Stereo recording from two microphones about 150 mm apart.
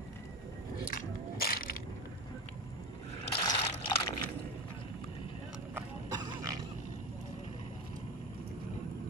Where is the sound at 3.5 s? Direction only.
40° left (ahead or behind).